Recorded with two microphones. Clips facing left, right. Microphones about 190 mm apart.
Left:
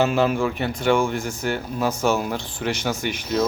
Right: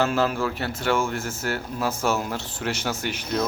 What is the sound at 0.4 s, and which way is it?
Speech, 20° left (ahead or behind).